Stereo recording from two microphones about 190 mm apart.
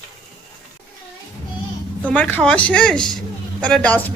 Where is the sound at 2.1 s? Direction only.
10° left (ahead or behind).